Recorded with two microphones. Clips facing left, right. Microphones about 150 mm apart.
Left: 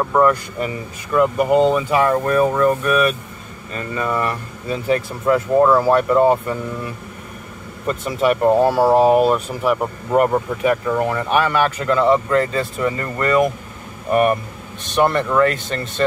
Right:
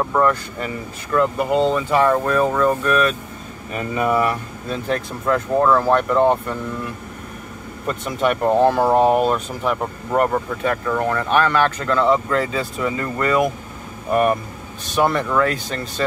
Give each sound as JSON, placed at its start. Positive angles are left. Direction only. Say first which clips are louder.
{"t": 0.1, "sound": "speech", "louder": "left 3 dB", "side_deg": 10}
{"t": 3.7, "sound": "speech", "louder": "right 3 dB", "side_deg": -15}